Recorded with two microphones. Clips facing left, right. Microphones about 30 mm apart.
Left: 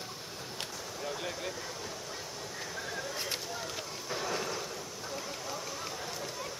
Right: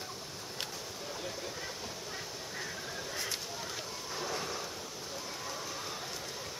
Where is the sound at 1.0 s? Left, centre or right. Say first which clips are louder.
Left 5 dB; left.